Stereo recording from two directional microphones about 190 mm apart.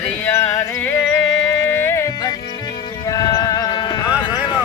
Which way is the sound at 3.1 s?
20° left (ahead or behind).